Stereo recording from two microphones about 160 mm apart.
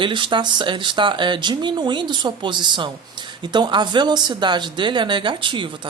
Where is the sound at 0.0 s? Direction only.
30° right (ahead or behind).